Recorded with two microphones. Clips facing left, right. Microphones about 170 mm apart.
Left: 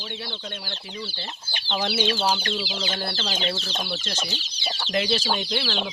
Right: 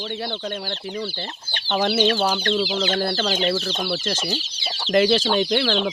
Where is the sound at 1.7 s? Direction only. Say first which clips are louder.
Right 6 dB; 50° right (ahead or behind).